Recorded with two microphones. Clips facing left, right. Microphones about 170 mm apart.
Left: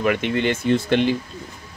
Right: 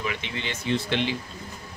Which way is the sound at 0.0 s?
55° left (ahead or behind).